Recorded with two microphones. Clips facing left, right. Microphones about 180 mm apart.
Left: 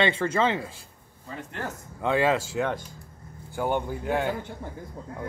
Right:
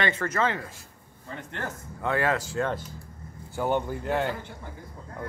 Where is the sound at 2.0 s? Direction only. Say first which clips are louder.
Left 3 dB; 20° left (ahead or behind); by 4.4 s 5° left (ahead or behind).